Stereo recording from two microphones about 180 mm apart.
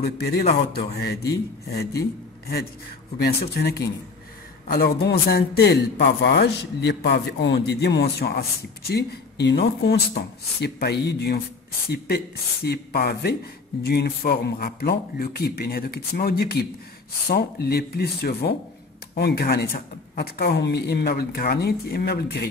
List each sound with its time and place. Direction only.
0.0 s a man's voice: 60° left (ahead or behind)
12.6 s a man's voice: 60° left (ahead or behind)